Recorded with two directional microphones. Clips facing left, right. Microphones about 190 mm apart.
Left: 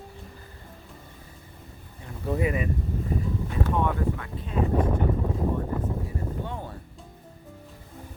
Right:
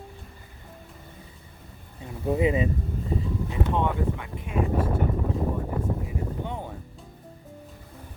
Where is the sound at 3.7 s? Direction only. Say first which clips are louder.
Even; 20° right (ahead or behind).